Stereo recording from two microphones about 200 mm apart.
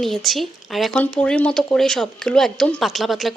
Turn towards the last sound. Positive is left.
turn(degrees=0)  # may be behind; listen again after turning